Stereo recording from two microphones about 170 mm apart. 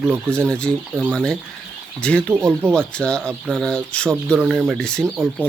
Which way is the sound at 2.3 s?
15° right (ahead or behind).